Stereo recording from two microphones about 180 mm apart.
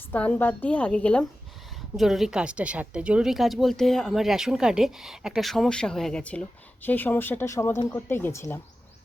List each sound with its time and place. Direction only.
0.1 s a woman's voice: 10° left (ahead or behind)